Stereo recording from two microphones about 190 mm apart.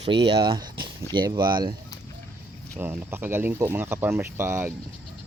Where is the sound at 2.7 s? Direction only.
10° right (ahead or behind).